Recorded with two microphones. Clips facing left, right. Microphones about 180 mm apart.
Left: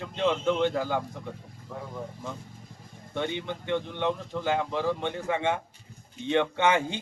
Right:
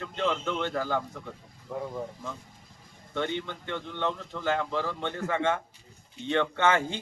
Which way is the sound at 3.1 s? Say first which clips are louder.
Even; 15° left (ahead or behind).